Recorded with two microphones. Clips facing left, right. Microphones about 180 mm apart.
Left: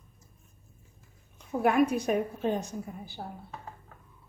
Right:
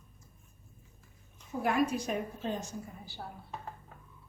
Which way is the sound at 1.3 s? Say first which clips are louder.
Left 5 dB; 60° left (ahead or behind).